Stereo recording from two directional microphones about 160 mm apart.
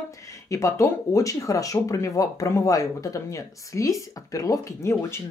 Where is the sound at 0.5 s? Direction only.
20° left (ahead or behind).